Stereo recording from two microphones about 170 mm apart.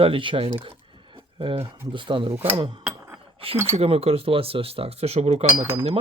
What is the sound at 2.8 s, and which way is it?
Chink, 15° right (ahead or behind).